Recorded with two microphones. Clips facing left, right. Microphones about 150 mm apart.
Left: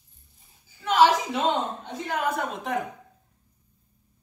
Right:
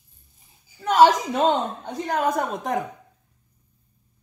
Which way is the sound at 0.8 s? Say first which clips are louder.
Right 4 dB; 45° right (ahead or behind).